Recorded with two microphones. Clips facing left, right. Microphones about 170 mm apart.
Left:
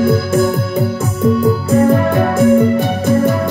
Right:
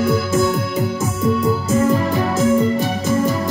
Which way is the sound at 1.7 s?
60° left (ahead or behind).